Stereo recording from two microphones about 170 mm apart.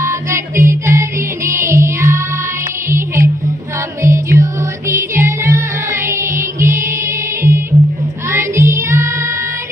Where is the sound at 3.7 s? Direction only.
15° right (ahead or behind).